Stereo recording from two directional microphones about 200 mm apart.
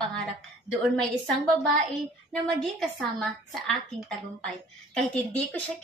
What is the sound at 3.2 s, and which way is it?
A woman's voice, 5° left (ahead or behind).